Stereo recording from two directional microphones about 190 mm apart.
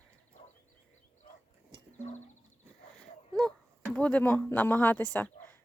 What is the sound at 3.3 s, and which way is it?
Speech, 5° left (ahead or behind).